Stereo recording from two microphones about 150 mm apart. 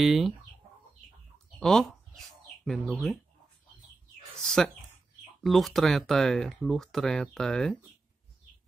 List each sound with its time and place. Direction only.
0.0 s speech: centre (ahead or behind)
1.6 s bird: 5° left (ahead or behind)
4.4 s speech: 5° left (ahead or behind)